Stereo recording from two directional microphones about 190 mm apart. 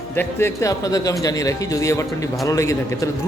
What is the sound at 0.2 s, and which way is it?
Speech, 15° left (ahead or behind).